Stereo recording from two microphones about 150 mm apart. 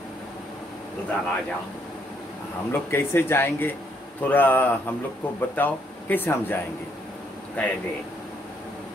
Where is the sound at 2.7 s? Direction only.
15° left (ahead or behind).